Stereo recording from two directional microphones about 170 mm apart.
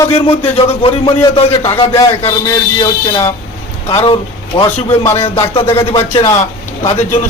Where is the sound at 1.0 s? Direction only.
20° left (ahead or behind).